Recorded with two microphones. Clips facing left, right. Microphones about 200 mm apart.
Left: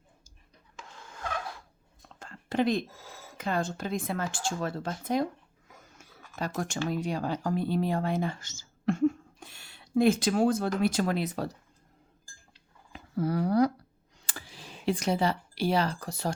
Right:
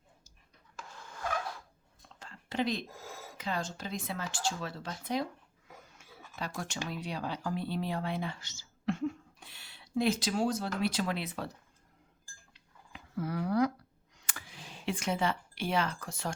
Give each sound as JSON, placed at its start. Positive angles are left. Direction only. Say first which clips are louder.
{"t": 2.0, "sound": "a sound", "louder": "left 4 dB", "side_deg": 50}
{"t": 3.3, "sound": "speech", "louder": "left 6 dB", "side_deg": 50}
{"t": 6.0, "sound": "a sound", "louder": "left 6 dB", "side_deg": 45}
{"t": 6.8, "sound": "speech", "louder": "left 7 dB", "side_deg": 45}
{"t": 12.2, "sound": "dishes", "louder": "left 2 dB", "side_deg": 40}
{"t": 14.2, "sound": "computer keyboard", "louder": "left 3 dB", "side_deg": 30}